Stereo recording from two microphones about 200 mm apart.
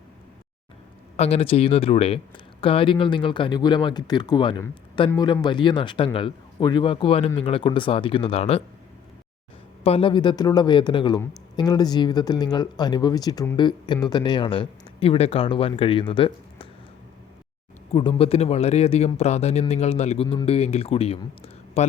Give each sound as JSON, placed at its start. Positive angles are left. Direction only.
{"t": 1.1, "sound": "speech", "side_deg": 30}
{"t": 9.8, "sound": "speech", "side_deg": 25}
{"t": 17.9, "sound": "speech", "side_deg": 25}